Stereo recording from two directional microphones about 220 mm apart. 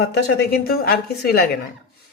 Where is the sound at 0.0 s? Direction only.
50° left (ahead or behind).